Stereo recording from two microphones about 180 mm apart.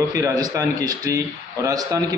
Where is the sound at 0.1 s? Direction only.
20° right (ahead or behind).